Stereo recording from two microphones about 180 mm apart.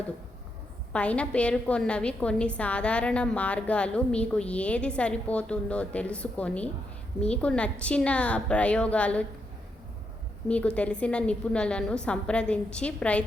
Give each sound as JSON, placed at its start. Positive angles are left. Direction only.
{"t": 0.9, "sound": "a woman's voice", "side_deg": 5}
{"t": 10.5, "sound": "a woman's voice", "side_deg": 5}